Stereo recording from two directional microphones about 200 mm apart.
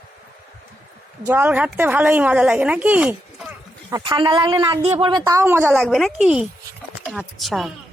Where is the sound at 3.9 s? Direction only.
20° right (ahead or behind).